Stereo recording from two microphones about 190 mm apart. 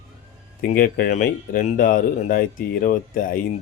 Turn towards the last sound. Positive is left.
turn(degrees=45)  # may be behind; listen again after turning